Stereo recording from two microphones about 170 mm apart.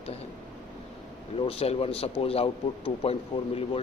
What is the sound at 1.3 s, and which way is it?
A man's voice, 35° left (ahead or behind).